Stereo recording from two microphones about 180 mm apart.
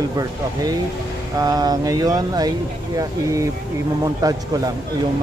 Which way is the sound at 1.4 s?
20° right (ahead or behind).